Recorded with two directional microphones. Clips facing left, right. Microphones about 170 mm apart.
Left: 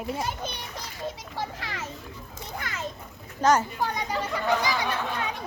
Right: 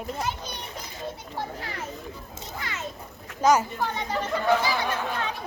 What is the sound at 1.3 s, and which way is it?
Speech, 90° left.